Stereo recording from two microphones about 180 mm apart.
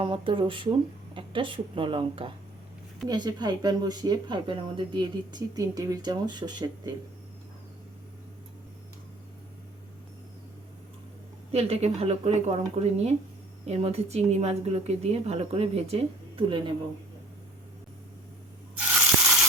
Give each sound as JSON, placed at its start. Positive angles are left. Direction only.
{"t": 0.0, "sound": "speech", "side_deg": -30}
{"t": 11.5, "sound": "speech", "side_deg": -35}